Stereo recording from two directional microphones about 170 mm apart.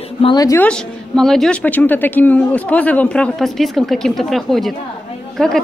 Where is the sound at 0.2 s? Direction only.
25° left (ahead or behind).